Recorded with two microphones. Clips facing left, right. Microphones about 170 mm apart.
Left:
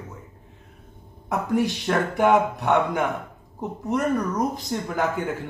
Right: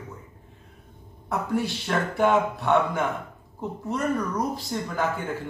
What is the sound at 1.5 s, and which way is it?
A man's voice, 20° left (ahead or behind).